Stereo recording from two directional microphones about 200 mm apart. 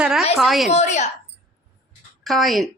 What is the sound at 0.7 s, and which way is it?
Speech, 35° left (ahead or behind).